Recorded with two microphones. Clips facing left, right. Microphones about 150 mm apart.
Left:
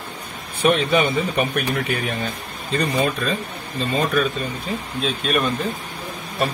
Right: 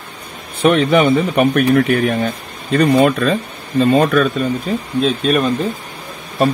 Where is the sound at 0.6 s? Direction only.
55° right (ahead or behind).